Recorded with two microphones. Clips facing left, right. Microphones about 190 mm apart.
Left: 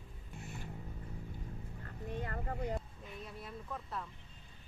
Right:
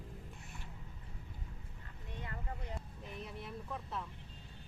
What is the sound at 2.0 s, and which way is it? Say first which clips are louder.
Vehicle: left 6 dB; 50° left (ahead or behind).